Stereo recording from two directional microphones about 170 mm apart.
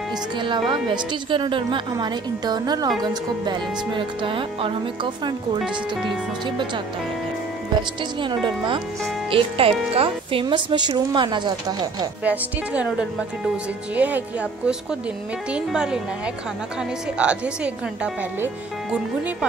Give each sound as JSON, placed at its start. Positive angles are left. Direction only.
{"t": 0.4, "sound": "speech", "side_deg": -30}
{"t": 8.2, "sound": "speech", "side_deg": -30}
{"t": 12.3, "sound": "a woman's voice", "side_deg": -10}
{"t": 17.2, "sound": "speech", "side_deg": -5}